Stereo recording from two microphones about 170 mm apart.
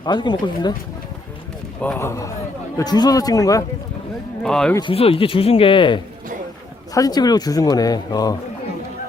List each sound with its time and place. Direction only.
0.0 s speech: 25° left (ahead or behind)
1.8 s speech: 10° left (ahead or behind)
4.4 s speech: 5° left (ahead or behind)
4.8 s speech: 35° left (ahead or behind)